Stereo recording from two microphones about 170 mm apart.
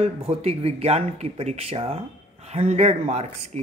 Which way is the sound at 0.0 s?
35° right (ahead or behind).